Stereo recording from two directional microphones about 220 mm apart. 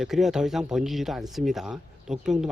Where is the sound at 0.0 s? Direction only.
Centre (ahead or behind).